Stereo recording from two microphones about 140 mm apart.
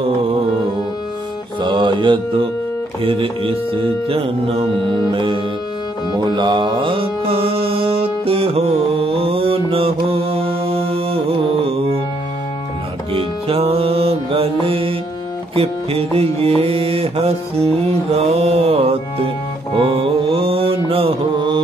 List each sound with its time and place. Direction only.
1.6 s mantra: 35° right (ahead or behind)
6.1 s music: 30° right (ahead or behind)
10.3 s mantra: 45° right (ahead or behind)
13.1 s music: 40° right (ahead or behind)
19.8 s mantra: 40° right (ahead or behind)